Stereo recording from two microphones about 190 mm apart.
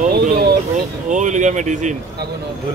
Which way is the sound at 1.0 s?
40° right (ahead or behind).